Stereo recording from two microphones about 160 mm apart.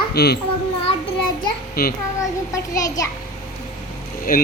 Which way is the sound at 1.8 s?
70° left (ahead or behind).